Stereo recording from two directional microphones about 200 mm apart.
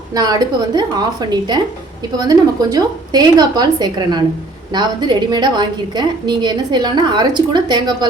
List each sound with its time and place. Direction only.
0.1 s a woman's voice: 20° right (ahead or behind)